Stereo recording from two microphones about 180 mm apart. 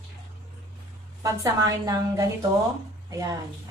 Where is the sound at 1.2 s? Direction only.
20° right (ahead or behind).